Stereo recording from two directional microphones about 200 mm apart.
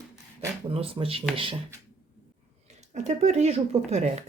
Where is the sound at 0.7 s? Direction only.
30° right (ahead or behind).